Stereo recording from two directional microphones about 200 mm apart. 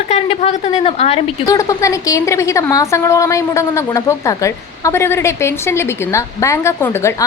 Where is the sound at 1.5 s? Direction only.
15° left (ahead or behind).